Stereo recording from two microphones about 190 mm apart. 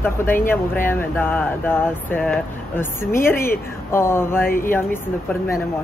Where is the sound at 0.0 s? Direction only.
10° left (ahead or behind).